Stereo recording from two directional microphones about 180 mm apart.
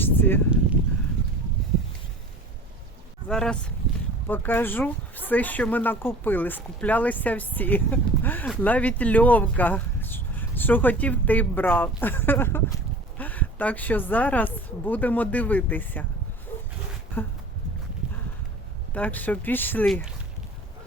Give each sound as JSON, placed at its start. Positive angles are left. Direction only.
{"t": 0.0, "sound": "a sound", "side_deg": 10}
{"t": 3.2, "sound": "speech", "side_deg": 5}
{"t": 17.2, "sound": "speech", "side_deg": 10}
{"t": 18.9, "sound": "speech", "side_deg": 10}